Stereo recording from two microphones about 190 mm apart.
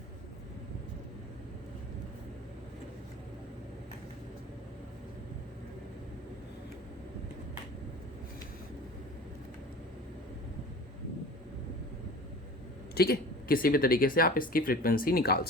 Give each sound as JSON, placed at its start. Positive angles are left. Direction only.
{"t": 12.9, "sound": "speech", "side_deg": 55}